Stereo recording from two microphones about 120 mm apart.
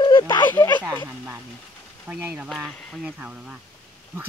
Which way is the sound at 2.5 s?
Centre (ahead or behind).